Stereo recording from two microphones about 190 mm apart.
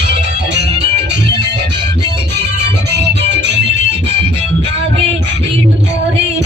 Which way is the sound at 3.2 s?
65° right (ahead or behind).